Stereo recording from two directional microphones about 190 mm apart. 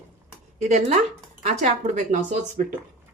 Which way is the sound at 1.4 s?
35° right (ahead or behind).